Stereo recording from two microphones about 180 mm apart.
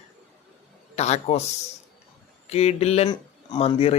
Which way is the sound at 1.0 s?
35° left (ahead or behind).